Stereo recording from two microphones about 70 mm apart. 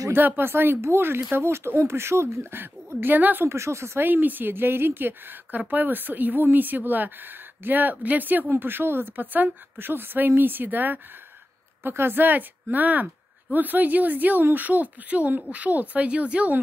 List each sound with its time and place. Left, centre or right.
0.1 s speech: right
3.4 s speech: right
4.0 s a woman's voice: right